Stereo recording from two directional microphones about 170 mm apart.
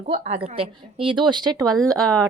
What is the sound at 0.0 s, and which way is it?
A woman's voice, 40° right (ahead or behind).